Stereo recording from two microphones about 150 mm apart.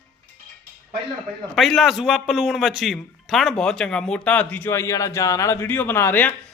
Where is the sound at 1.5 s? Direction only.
Centre (ahead or behind).